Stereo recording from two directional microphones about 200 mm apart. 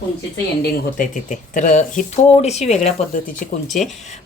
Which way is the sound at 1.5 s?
40° left (ahead or behind).